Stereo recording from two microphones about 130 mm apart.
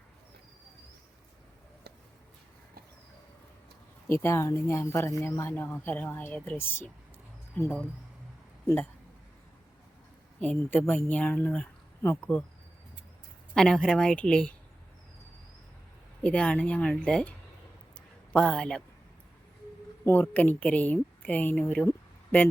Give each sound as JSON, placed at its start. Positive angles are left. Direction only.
{"t": 4.1, "sound": "a woman's voice", "side_deg": 20}
{"t": 10.4, "sound": "a woman's voice", "side_deg": 10}
{"t": 13.5, "sound": "a woman's voice", "side_deg": 5}
{"t": 16.2, "sound": "a woman's voice", "side_deg": 10}
{"t": 18.3, "sound": "a woman's voice", "side_deg": 5}
{"t": 20.1, "sound": "a woman's voice", "side_deg": 15}
{"t": 21.8, "sound": "a sound", "side_deg": 15}